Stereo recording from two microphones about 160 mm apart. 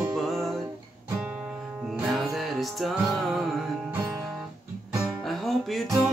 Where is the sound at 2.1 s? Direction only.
Centre (ahead or behind).